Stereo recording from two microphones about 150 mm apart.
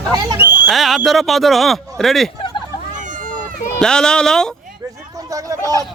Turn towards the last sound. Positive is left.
turn(degrees=-25)  # may be behind; listen again after turning